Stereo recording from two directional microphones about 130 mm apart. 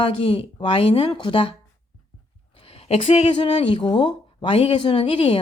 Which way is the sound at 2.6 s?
50° left (ahead or behind).